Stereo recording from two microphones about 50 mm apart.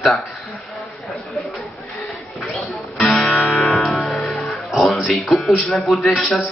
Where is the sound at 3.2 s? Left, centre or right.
Left.